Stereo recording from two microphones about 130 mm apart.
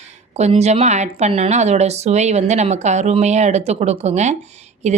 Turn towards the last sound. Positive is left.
turn(degrees=-60)  # may be behind; listen again after turning